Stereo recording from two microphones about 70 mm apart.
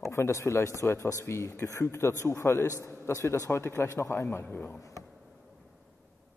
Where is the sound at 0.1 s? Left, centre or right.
Left.